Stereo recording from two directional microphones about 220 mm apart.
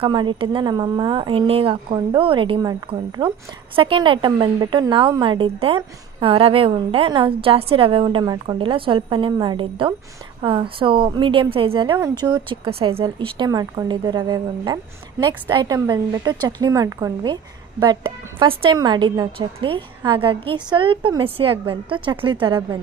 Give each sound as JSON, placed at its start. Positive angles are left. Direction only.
{"t": 0.0, "sound": "a woman's voice", "side_deg": -20}
{"t": 3.8, "sound": "a woman's voice", "side_deg": -25}
{"t": 18.3, "sound": "a woman's voice", "side_deg": -20}